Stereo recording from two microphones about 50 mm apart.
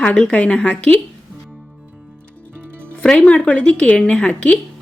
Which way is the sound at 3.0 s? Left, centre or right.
Left.